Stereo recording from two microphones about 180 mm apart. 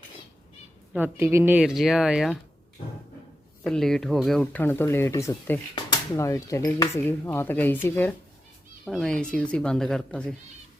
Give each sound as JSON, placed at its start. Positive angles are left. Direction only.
{"t": 0.9, "sound": "speech", "side_deg": -10}
{"t": 3.6, "sound": "speech", "side_deg": 5}